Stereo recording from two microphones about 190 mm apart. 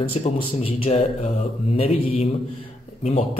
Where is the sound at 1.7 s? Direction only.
30° left (ahead or behind).